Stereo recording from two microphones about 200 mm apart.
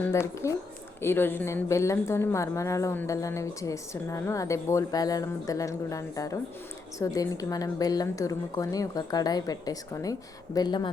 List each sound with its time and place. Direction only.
0.1 s a woman's voice: 15° left (ahead or behind)